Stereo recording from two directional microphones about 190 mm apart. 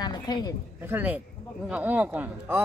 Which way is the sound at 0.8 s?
10° right (ahead or behind).